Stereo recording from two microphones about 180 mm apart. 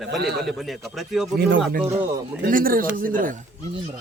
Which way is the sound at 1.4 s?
70° right (ahead or behind).